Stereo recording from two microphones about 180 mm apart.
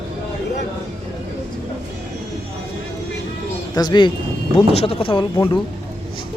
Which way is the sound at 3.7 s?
20° left (ahead or behind).